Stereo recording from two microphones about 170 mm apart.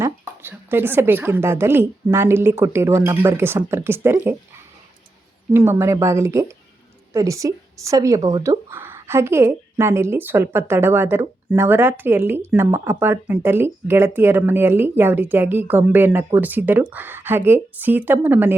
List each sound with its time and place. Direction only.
0.0 s a woman's voice: 15° right (ahead or behind)
5.5 s a woman's voice: 15° right (ahead or behind)